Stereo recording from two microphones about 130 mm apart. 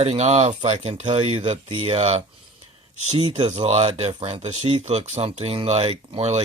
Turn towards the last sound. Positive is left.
turn(degrees=-50)  # may be behind; listen again after turning